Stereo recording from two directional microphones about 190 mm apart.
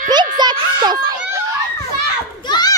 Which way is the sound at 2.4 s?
20° left (ahead or behind).